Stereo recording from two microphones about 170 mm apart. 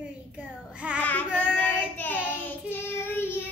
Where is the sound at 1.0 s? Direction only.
10° left (ahead or behind).